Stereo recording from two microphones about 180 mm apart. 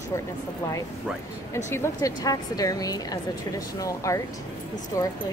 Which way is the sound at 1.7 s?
15° left (ahead or behind).